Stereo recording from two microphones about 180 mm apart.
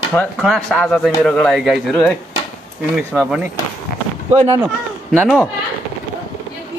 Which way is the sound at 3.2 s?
5° right (ahead or behind).